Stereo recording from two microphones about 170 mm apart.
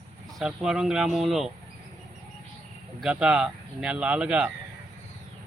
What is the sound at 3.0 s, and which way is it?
Speech, 5° right (ahead or behind).